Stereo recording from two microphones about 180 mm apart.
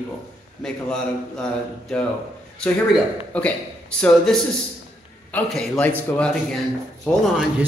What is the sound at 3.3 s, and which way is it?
Speech, 5° left (ahead or behind).